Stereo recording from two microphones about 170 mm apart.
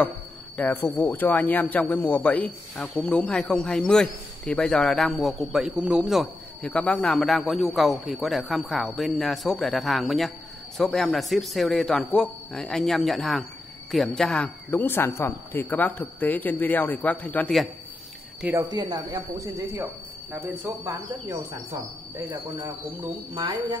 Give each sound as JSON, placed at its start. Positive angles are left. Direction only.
{"t": 0.6, "sound": "a man's voice", "side_deg": 10}
{"t": 18.4, "sound": "speech", "side_deg": -15}